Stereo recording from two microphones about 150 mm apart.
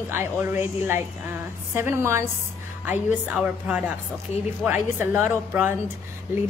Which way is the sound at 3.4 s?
10° right (ahead or behind).